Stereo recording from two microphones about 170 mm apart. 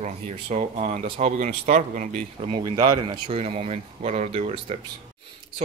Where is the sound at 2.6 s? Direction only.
25° right (ahead or behind).